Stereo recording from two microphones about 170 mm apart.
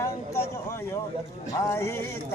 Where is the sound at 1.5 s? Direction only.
15° left (ahead or behind).